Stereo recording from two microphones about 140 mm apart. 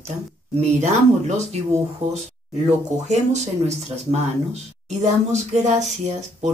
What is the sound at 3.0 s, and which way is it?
Speech, 50° right (ahead or behind).